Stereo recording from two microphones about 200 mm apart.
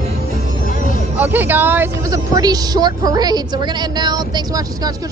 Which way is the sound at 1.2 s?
10° right (ahead or behind).